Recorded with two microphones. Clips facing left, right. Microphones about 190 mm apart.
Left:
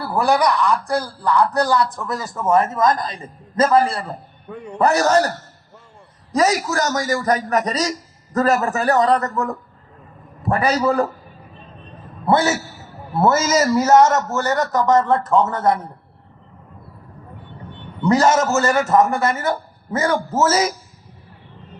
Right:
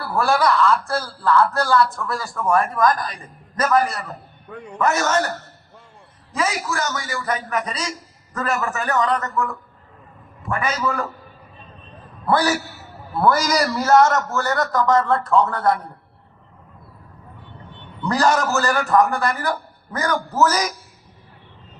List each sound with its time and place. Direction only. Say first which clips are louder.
0.0 s a man's voice: left 2 dB; 20° left (ahead or behind); by 5.3 s 35° left (ahead or behind)
6.3 s a man's voice: left 6 dB; 40° left (ahead or behind)
12.2 s speech: left 2 dB; 25° left (ahead or behind)
18.0 s speech: left 4 dB; 20° left (ahead or behind)